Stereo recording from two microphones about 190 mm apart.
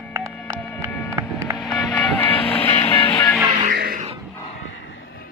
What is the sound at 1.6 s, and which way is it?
Vehicle, 5° left (ahead or behind).